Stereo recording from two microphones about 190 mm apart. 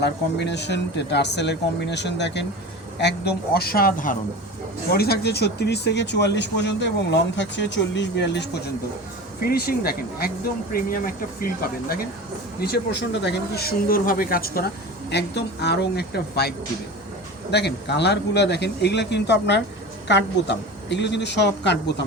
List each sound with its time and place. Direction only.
0.0 s speech: 65° left (ahead or behind)
15.1 s speech: 65° left (ahead or behind)